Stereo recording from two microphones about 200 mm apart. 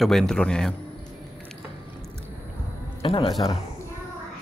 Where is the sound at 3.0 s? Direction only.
25° left (ahead or behind).